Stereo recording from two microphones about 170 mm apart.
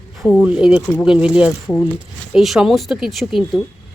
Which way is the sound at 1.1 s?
5° right (ahead or behind).